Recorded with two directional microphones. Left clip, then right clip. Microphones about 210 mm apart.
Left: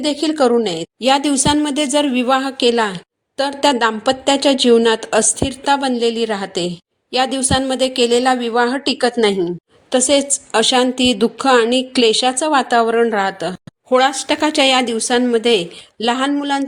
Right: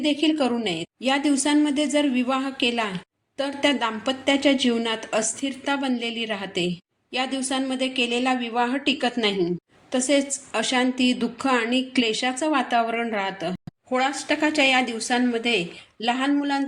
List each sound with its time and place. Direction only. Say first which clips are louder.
0.1 s a woman's voice: left 10 dB; 40° left (ahead or behind)